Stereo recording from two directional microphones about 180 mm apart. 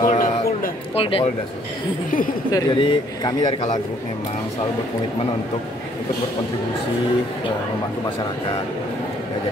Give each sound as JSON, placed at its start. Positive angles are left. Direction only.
{"t": 0.0, "sound": "a sound", "side_deg": 50}
{"t": 0.9, "sound": "speech", "side_deg": 30}
{"t": 2.5, "sound": "a man's voice", "side_deg": 25}